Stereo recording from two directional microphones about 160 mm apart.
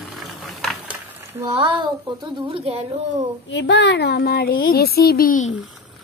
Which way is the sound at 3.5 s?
90° left.